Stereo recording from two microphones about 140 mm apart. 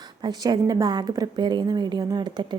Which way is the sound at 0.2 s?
30° right (ahead or behind).